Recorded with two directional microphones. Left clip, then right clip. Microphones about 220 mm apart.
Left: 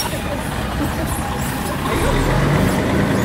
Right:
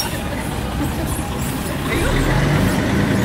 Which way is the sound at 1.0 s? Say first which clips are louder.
Left 2 dB; 25° left (ahead or behind).